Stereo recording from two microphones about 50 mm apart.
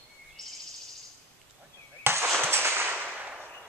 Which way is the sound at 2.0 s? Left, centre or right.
Right.